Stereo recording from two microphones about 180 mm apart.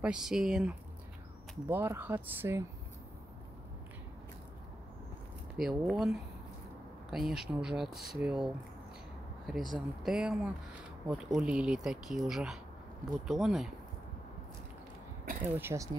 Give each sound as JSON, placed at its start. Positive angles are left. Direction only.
{"t": 0.0, "sound": "speech", "side_deg": -5}
{"t": 5.6, "sound": "speech", "side_deg": 0}
{"t": 9.6, "sound": "speech", "side_deg": -25}
{"t": 10.0, "sound": "speech", "side_deg": -5}
{"t": 15.4, "sound": "speech", "side_deg": -10}